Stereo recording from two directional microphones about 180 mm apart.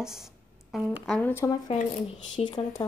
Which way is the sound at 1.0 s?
10° left (ahead or behind).